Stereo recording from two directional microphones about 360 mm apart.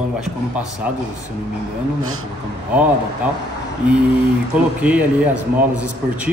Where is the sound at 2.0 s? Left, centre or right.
Right.